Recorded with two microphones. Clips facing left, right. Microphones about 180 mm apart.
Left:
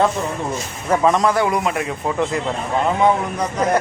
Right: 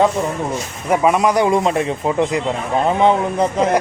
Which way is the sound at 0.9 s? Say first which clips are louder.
Right 1 dB; 10° right (ahead or behind).